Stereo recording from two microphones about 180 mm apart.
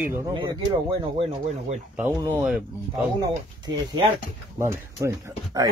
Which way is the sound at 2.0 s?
10° right (ahead or behind).